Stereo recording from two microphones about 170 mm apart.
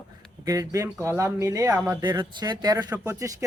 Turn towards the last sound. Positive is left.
turn(degrees=-20)  # may be behind; listen again after turning